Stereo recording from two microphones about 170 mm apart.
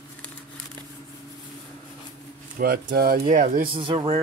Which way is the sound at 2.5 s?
60° right (ahead or behind).